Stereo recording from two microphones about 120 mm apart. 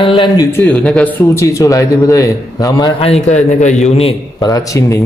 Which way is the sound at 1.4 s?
25° left (ahead or behind).